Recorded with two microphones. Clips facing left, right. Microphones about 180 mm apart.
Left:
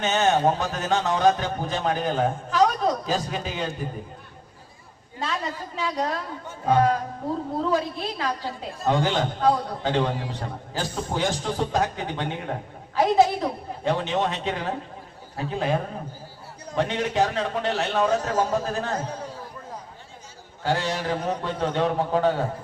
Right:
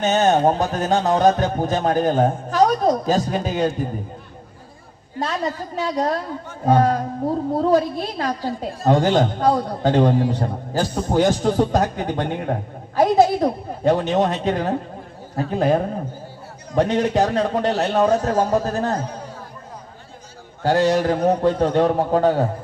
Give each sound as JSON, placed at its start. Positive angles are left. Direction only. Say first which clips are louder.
{"t": 0.0, "sound": "speech", "louder": "right 5 dB", "side_deg": -40}
{"t": 5.2, "sound": "a woman's voice", "louder": "right 5 dB", "side_deg": -40}
{"t": 20.6, "sound": "a woman's voice", "louder": "right 9 dB", "side_deg": -45}